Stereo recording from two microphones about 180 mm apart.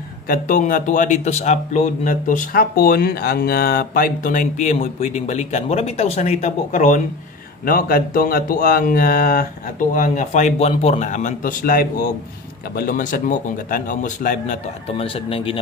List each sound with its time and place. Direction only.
0.3 s a man's voice: 45° left (ahead or behind)
7.6 s a man's voice: 55° left (ahead or behind)
14.9 s speech: 30° left (ahead or behind)